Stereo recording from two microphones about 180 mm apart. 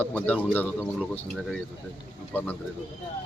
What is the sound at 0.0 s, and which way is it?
Speech, 10° left (ahead or behind).